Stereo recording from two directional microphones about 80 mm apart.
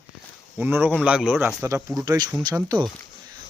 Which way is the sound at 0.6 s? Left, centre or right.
Right.